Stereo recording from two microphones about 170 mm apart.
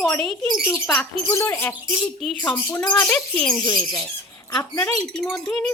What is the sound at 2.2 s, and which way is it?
Speech, centre (ahead or behind).